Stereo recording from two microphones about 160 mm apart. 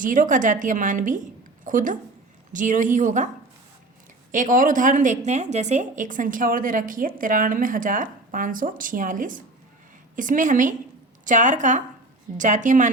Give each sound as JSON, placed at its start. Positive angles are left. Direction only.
{"t": 0.0, "sound": "a woman's voice", "side_deg": -55}
{"t": 4.3, "sound": "a woman's voice", "side_deg": -55}